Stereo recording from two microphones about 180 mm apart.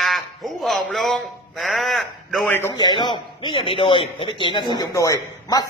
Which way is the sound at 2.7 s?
25° left (ahead or behind).